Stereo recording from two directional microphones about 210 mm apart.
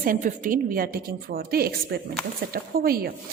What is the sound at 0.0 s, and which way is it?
A woman's voice, 40° right (ahead or behind).